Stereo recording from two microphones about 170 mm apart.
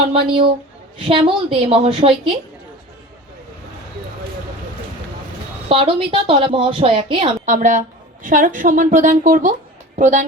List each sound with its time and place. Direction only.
0.1 s a woman's voice: 30° right (ahead or behind)
5.6 s a woman's voice: 35° right (ahead or behind)
7.4 s a woman's voice: 50° right (ahead or behind)